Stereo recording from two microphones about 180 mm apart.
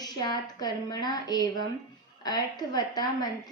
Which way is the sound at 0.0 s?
20° left (ahead or behind).